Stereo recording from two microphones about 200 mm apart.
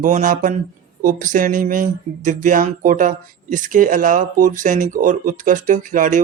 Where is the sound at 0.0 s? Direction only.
40° right (ahead or behind).